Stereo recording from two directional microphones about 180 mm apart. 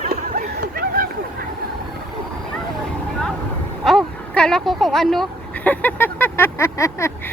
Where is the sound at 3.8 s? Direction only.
Centre (ahead or behind).